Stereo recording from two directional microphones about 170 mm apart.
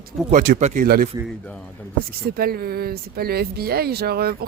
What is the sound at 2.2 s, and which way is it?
Speech, 65° right (ahead or behind).